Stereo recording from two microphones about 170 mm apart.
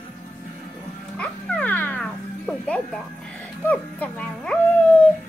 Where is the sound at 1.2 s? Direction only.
10° left (ahead or behind).